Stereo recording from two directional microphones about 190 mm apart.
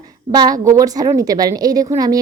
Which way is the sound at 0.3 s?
20° right (ahead or behind).